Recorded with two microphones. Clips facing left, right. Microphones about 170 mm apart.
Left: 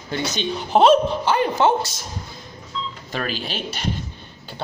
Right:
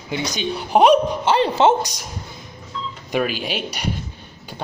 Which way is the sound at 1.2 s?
30° right (ahead or behind).